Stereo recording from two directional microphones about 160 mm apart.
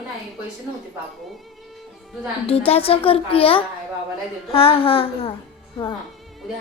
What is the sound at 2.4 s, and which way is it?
Child singing, 35° left (ahead or behind).